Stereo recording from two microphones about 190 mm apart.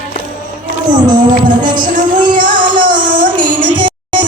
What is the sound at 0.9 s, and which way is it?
Speech, 25° right (ahead or behind).